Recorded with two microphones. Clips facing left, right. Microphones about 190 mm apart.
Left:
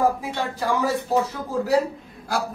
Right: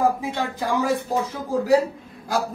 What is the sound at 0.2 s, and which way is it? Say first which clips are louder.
A man's voice: right 1 dB; 15° right (ahead or behind).